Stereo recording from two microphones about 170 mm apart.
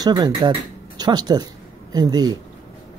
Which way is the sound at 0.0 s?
25° right (ahead or behind).